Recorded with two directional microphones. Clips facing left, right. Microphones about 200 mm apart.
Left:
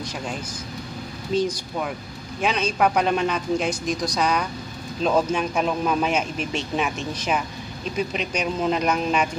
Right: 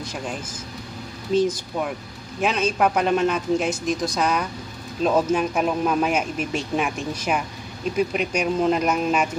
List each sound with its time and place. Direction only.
1.3 s a man's voice: centre (ahead or behind)